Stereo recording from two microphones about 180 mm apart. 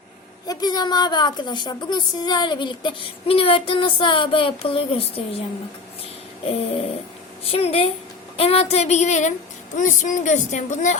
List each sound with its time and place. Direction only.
0.4 s a woman's voice: 20° left (ahead or behind)
6.4 s a sound: 35° left (ahead or behind)
9.7 s a woman's voice: 45° left (ahead or behind)